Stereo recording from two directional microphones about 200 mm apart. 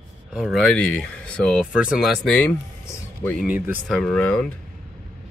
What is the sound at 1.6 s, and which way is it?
Speech, 5° right (ahead or behind).